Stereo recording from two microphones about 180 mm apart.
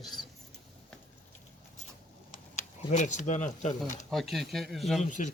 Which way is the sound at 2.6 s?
40° left (ahead or behind).